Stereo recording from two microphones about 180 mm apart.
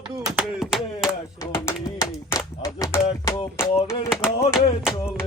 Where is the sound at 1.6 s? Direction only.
20° left (ahead or behind).